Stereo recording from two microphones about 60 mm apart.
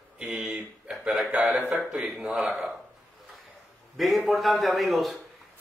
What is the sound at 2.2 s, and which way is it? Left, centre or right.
Speech, right.